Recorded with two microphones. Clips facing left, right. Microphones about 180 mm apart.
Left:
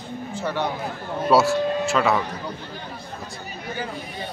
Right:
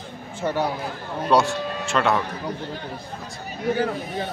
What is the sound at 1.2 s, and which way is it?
Speech, 5° left (ahead or behind).